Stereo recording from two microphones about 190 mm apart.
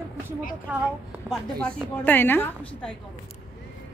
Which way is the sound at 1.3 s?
5° left (ahead or behind).